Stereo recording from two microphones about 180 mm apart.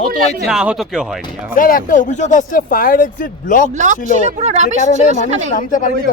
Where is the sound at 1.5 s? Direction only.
50° left (ahead or behind).